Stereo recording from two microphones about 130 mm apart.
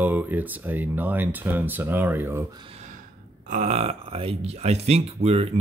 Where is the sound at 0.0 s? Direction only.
15° right (ahead or behind).